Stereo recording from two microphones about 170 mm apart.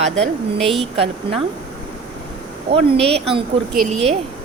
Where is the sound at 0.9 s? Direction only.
30° right (ahead or behind).